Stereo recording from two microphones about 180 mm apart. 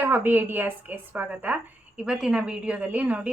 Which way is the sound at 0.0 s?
10° right (ahead or behind).